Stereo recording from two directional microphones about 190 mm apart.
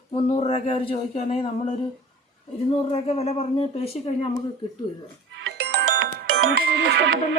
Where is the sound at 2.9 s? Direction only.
30° left (ahead or behind).